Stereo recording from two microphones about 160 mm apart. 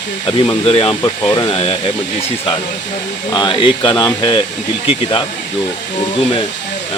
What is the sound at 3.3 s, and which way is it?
Speech, 30° left (ahead or behind).